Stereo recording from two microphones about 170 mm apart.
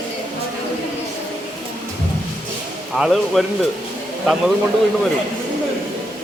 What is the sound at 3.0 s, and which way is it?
Speech, 5° right (ahead or behind).